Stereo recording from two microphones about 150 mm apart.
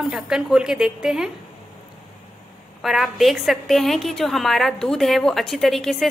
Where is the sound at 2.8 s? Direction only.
Centre (ahead or behind).